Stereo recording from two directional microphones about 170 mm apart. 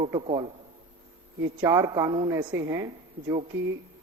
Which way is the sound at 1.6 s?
20° right (ahead or behind).